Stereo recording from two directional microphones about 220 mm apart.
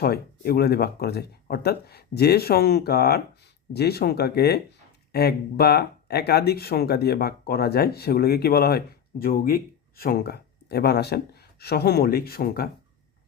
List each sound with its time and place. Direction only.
0.0 s speech: 45° left (ahead or behind)